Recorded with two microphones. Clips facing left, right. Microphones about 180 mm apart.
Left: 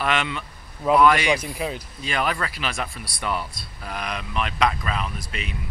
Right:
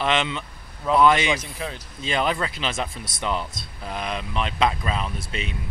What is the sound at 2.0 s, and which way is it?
Speech, 25° right (ahead or behind).